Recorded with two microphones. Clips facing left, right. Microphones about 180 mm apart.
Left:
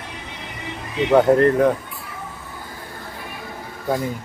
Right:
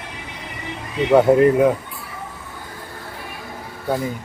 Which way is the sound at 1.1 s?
5° right (ahead or behind).